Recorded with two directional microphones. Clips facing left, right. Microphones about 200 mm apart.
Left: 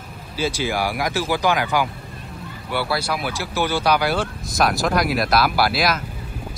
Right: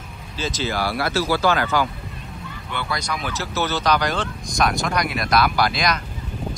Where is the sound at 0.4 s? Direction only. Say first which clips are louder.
Left 2 dB; 10° left (ahead or behind).